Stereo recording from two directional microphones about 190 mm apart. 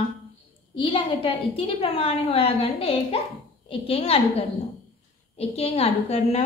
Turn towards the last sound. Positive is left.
turn(degrees=35)  # may be behind; listen again after turning